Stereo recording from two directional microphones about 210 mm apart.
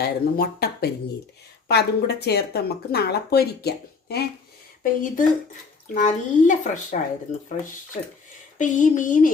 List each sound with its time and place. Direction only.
0.0 s speech: 45° left (ahead or behind)